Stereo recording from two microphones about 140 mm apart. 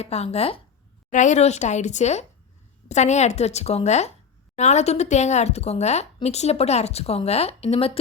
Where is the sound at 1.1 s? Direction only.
60° left (ahead or behind).